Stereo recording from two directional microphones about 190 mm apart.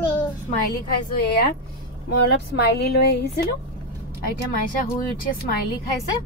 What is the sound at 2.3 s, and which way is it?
Speech, 60° left (ahead or behind).